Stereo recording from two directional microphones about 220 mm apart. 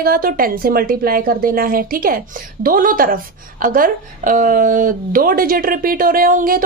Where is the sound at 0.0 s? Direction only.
40° right (ahead or behind).